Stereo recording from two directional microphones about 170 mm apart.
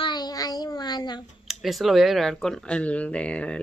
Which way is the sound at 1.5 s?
Centre (ahead or behind).